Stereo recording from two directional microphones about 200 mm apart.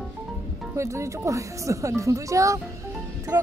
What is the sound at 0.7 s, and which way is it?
Speech, 15° right (ahead or behind).